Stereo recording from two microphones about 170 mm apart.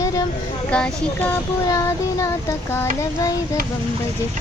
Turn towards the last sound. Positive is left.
turn(degrees=15)  # may be behind; listen again after turning